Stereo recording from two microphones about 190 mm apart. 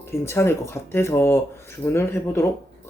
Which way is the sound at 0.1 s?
15° left (ahead or behind).